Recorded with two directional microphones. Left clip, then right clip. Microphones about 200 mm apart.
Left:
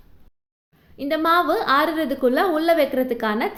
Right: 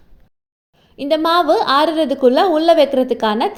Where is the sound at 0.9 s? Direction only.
25° right (ahead or behind).